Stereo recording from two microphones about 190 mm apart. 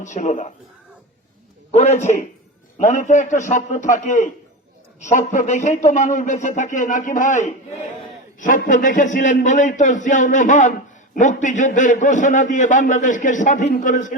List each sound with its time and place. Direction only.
0.0 s a man's voice: 40° left (ahead or behind)
1.7 s a man's voice: 35° left (ahead or behind)